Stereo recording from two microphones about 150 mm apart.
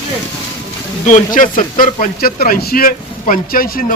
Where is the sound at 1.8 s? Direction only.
75° left (ahead or behind).